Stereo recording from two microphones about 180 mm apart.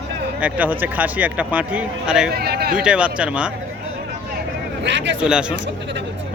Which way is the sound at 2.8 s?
5° right (ahead or behind).